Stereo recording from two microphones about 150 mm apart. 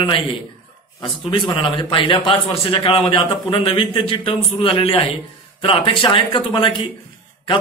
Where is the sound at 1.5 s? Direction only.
30° left (ahead or behind).